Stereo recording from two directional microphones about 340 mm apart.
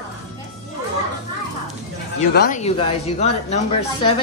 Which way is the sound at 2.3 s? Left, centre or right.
Left.